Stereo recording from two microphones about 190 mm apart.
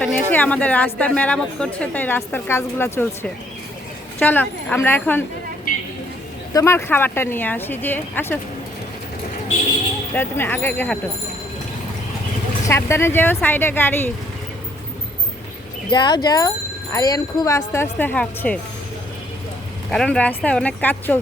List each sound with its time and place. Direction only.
0.0 s a sound: 10° left (ahead or behind)
0.9 s a woman's voice: 5° left (ahead or behind)
6.5 s a woman's voice: 15° left (ahead or behind)
10.2 s a woman's voice: 10° left (ahead or behind)
12.6 s a woman's voice: 15° left (ahead or behind)
15.9 s a woman's voice: 25° left (ahead or behind); by 18.6 s 5° left (ahead or behind)
19.9 s a woman's voice: 5° left (ahead or behind)